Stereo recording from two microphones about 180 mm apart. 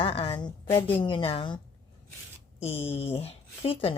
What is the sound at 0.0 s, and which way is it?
A woman's voice, 30° left (ahead or behind).